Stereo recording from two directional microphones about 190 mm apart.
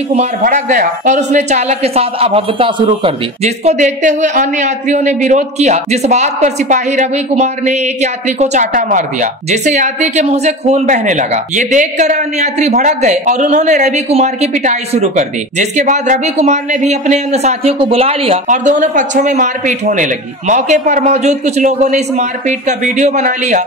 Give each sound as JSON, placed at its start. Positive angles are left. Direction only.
{"t": 0.1, "sound": "a woman's voice", "side_deg": -40}